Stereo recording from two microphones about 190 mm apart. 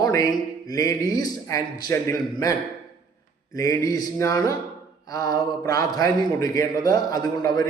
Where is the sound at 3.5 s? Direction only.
15° left (ahead or behind).